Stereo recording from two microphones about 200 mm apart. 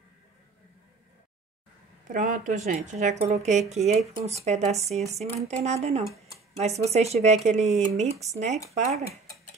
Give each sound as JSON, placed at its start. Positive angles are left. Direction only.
{"t": 2.0, "sound": "speech", "side_deg": -40}